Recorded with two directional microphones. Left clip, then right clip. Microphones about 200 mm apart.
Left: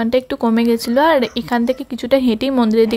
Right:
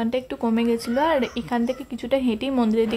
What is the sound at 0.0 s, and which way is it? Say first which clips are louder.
A woman's voice: left 8 dB; 30° left (ahead or behind).